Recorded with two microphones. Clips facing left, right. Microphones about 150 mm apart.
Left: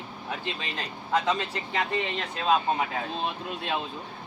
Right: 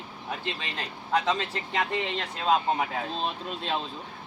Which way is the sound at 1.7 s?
Centre (ahead or behind).